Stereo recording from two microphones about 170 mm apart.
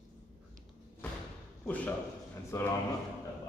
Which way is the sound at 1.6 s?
10° left (ahead or behind).